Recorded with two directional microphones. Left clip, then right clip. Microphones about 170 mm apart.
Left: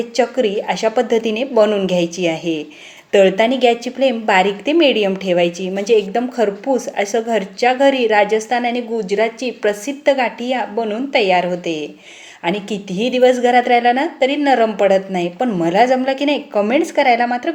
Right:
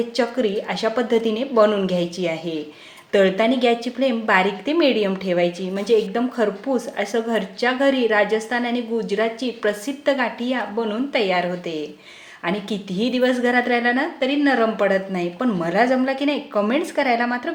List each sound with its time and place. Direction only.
0.2 s speech: 20° left (ahead or behind)